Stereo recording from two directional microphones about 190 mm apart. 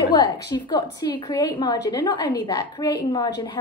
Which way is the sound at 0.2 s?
20° left (ahead or behind).